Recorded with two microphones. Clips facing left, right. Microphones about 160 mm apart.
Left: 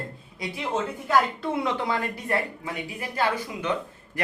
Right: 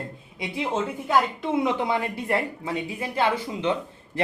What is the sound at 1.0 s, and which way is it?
A woman's voice, 20° right (ahead or behind).